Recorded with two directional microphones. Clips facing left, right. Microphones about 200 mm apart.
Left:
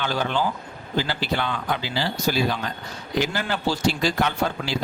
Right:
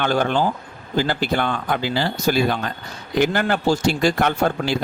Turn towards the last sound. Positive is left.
turn(degrees=-50)  # may be behind; listen again after turning